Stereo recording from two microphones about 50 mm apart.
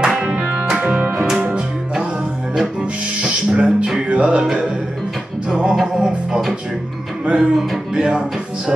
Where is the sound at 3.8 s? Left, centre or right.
Centre.